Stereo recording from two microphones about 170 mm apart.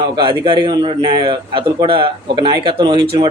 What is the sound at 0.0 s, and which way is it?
A man's voice, 25° right (ahead or behind).